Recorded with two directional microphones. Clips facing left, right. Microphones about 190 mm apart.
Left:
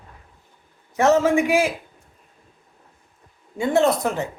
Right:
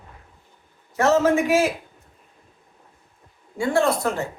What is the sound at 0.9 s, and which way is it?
Speech, 15° left (ahead or behind).